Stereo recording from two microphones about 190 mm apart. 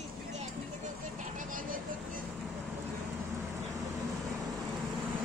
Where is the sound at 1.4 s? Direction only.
45° right (ahead or behind).